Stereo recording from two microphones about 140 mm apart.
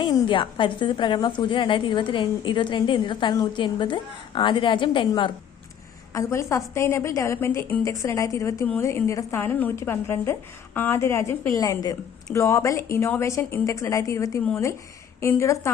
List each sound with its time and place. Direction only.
0.0 s a woman's voice: 30° left (ahead or behind)
6.1 s a woman's voice: 20° left (ahead or behind)